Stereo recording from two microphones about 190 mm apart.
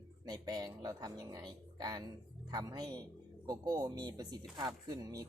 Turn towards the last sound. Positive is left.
turn(degrees=-20)  # may be behind; listen again after turning